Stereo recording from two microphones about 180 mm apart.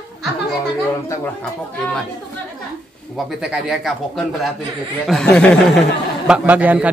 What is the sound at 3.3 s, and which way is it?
Speech, 5° right (ahead or behind).